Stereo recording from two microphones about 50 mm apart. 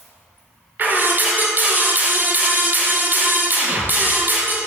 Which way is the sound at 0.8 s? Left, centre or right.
Right.